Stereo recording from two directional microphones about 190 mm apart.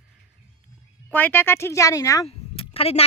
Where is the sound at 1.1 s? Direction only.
10° left (ahead or behind).